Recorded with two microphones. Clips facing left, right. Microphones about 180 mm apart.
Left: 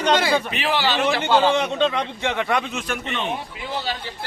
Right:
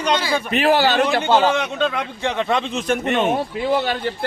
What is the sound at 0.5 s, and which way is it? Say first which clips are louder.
Speech: right 6 dB; 45° right (ahead or behind).